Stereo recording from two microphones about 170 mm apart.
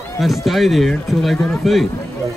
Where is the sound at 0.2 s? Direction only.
Centre (ahead or behind).